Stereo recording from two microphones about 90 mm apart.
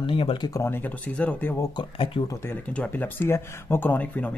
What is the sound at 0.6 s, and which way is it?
Speech, 25° left (ahead or behind).